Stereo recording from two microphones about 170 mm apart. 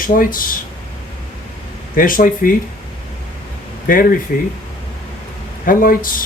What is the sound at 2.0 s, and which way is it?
Speech, 55° left (ahead or behind).